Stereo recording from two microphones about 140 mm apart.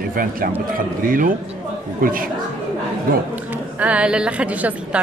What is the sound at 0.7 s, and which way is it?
Speech, 85° right.